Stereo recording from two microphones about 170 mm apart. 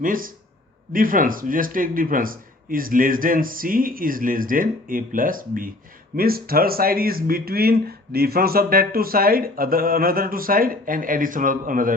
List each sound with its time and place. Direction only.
0.0 s speech: 55° right (ahead or behind)